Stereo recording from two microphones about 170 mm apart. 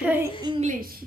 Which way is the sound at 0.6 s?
55° right (ahead or behind).